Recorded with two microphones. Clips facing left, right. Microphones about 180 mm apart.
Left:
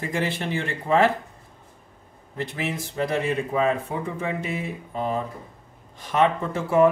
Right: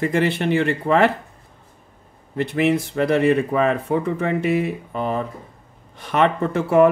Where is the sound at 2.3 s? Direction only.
65° right (ahead or behind).